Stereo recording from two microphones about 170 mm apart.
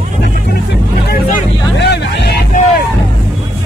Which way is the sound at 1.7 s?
90° left.